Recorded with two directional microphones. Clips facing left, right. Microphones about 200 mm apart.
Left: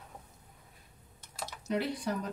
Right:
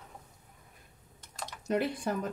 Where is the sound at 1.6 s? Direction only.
50° right (ahead or behind).